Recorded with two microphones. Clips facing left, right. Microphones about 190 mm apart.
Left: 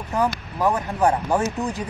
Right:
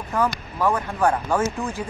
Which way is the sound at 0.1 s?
20° left (ahead or behind).